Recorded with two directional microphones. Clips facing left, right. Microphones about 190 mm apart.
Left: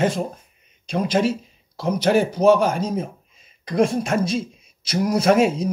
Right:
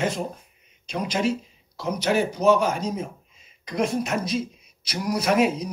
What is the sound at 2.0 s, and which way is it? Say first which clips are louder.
Speech: left 4 dB; 55° left (ahead or behind).